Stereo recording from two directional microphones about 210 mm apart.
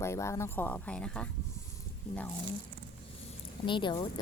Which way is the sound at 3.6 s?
20° left (ahead or behind).